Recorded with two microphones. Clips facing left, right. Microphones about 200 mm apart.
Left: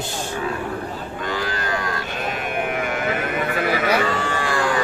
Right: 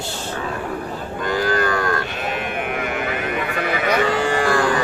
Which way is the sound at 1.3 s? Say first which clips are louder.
Right 7 dB; 50° right (ahead or behind).